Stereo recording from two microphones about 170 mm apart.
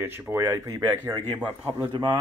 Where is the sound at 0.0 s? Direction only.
15° right (ahead or behind).